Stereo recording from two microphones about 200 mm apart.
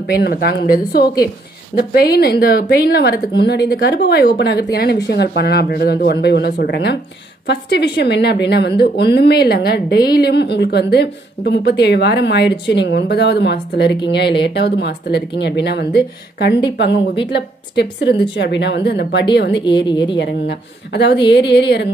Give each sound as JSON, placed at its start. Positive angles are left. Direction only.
{"t": 0.0, "sound": "a woman's voice", "side_deg": 50}
{"t": 19.9, "sound": "speech", "side_deg": 25}
{"t": 20.2, "sound": "a woman's voice", "side_deg": 60}